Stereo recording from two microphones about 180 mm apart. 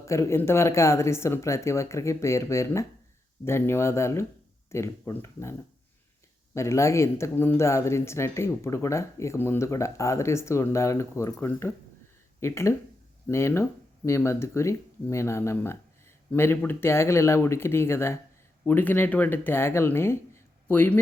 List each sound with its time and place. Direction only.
0.0 s speech: 15° left (ahead or behind)